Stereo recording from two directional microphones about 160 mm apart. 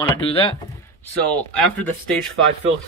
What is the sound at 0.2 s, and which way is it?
Speech, 35° left (ahead or behind).